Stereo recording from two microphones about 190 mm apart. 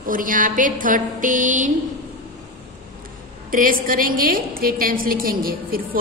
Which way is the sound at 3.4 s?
45° right (ahead or behind).